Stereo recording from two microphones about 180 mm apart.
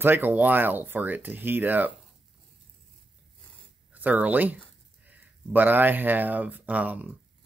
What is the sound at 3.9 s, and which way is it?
Speech, 10° right (ahead or behind).